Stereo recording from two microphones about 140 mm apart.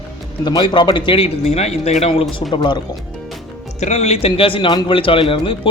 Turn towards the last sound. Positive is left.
turn(degrees=40)  # may be behind; listen again after turning